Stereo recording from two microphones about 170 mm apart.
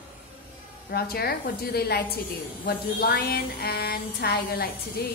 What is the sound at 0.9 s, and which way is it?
Speech, 65° left (ahead or behind).